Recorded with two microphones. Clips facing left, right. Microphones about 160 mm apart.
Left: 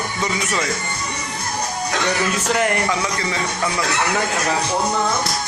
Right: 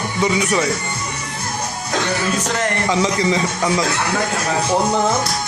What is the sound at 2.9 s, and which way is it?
Speech, 20° right (ahead or behind).